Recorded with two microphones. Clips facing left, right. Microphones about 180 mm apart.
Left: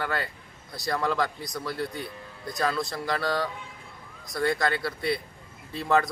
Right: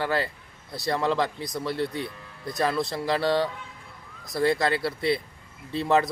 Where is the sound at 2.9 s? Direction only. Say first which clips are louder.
Right 4 dB; 25° right (ahead or behind).